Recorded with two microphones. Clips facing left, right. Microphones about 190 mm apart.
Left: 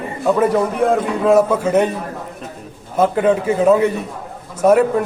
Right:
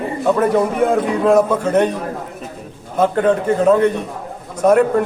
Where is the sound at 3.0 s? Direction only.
5° left (ahead or behind).